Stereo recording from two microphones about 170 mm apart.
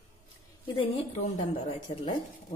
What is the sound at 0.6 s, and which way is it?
A woman's voice, 30° left (ahead or behind).